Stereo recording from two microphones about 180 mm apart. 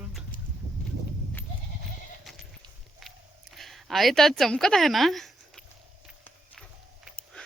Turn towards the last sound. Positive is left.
turn(degrees=5)  # may be behind; listen again after turning